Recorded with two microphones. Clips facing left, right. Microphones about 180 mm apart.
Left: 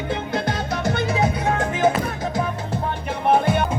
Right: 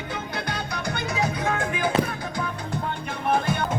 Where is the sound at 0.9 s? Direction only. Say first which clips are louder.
Left 6 dB; 35° left (ahead or behind).